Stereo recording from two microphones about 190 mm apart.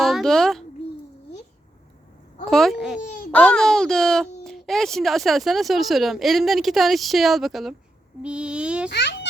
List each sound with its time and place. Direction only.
0.0 s a sound: centre (ahead or behind)
2.5 s speech: centre (ahead or behind)
8.9 s a child's voice: 65° left (ahead or behind)